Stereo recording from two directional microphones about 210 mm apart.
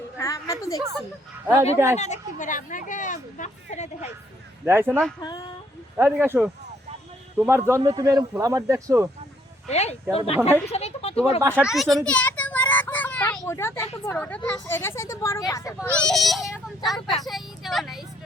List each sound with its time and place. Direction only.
0.2 s a sound: 15° left (ahead or behind)
2.0 s speech: 35° left (ahead or behind)
4.6 s speech: 10° right (ahead or behind)
4.9 s speech: 5° left (ahead or behind)
5.2 s speech: 20° left (ahead or behind)
6.0 s speech: 10° right (ahead or behind)
9.6 s speech: 30° left (ahead or behind)
10.7 s a sound: 30° left (ahead or behind)
11.3 s children playing: 10° right (ahead or behind)
13.4 s speech: 10° left (ahead or behind)